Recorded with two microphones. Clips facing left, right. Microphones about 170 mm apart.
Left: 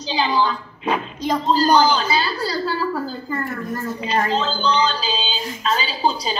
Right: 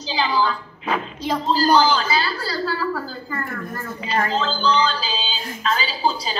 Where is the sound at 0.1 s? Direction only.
20° left (ahead or behind).